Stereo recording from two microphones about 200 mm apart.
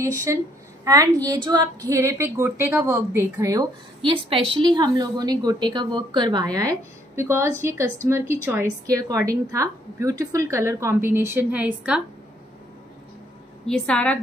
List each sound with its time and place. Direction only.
0.0 s a woman's voice: 15° right (ahead or behind)
13.7 s a woman's voice: 5° left (ahead or behind)